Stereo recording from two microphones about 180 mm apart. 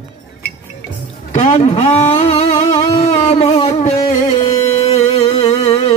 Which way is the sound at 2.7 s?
25° left (ahead or behind).